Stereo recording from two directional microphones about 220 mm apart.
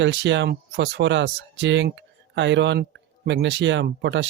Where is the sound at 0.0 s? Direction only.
55° right (ahead or behind).